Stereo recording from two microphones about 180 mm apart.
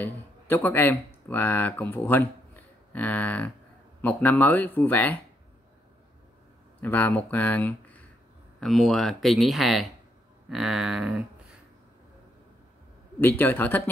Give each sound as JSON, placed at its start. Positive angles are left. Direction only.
{"t": 0.0, "sound": "speech", "side_deg": 10}
{"t": 6.8, "sound": "speech", "side_deg": 10}
{"t": 13.4, "sound": "speech", "side_deg": 10}